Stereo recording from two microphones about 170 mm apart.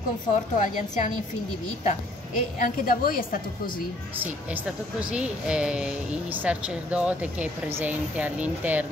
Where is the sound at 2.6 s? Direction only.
55° left (ahead or behind).